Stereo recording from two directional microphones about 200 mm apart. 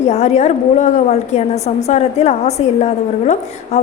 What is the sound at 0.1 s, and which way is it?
A woman's voice, 35° left (ahead or behind).